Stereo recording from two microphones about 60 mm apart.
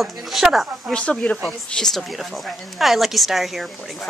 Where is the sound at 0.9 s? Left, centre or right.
Centre.